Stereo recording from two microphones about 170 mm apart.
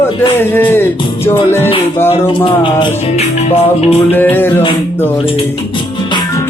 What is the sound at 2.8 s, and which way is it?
Music, 40° left (ahead or behind).